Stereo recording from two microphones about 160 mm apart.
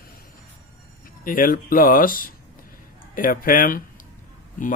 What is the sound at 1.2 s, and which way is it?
Speech, 60° left (ahead or behind).